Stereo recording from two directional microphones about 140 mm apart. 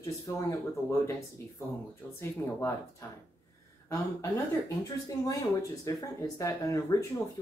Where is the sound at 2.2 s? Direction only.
20° left (ahead or behind).